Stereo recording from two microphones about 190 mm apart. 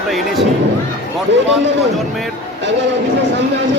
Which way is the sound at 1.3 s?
70° right (ahead or behind).